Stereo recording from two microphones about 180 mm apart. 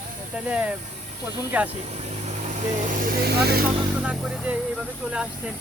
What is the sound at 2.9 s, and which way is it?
Speech, 50° right (ahead or behind).